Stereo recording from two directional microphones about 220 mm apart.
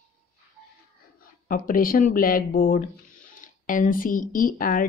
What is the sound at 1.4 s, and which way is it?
A woman's voice, 40° left (ahead or behind).